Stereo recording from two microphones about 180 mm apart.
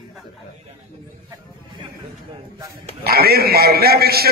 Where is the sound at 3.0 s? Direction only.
60° right (ahead or behind).